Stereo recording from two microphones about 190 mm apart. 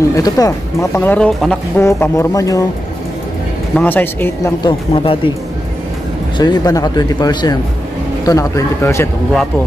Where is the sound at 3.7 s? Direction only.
10° left (ahead or behind).